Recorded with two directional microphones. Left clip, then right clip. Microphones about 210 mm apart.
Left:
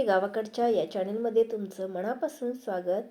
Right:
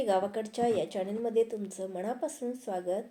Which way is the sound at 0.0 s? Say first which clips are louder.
Left 3 dB; 10° left (ahead or behind).